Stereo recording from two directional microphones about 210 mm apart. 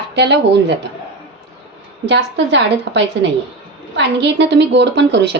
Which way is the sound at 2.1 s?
55° right (ahead or behind).